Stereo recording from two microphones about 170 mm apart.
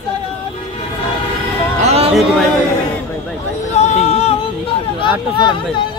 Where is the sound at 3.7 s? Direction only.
40° left (ahead or behind).